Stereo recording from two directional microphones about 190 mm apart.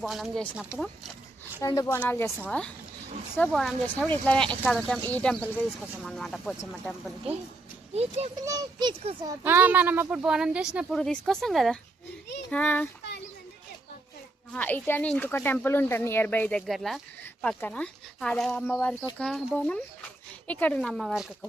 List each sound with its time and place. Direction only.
0.0 s speech: centre (ahead or behind)
1.6 s speech: 15° left (ahead or behind)
7.9 s a child's voice: 35° right (ahead or behind)
8.4 s a child's voice: 20° right (ahead or behind); by 12.9 s 10° left (ahead or behind)
14.5 s speech: 10° left (ahead or behind)